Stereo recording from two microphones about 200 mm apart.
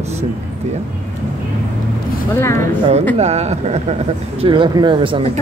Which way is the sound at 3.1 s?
35° right (ahead or behind).